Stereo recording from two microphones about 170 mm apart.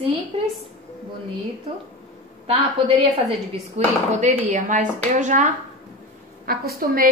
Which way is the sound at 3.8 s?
40° right (ahead or behind).